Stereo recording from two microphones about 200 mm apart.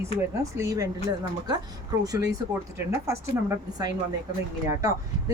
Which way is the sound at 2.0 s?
15° right (ahead or behind).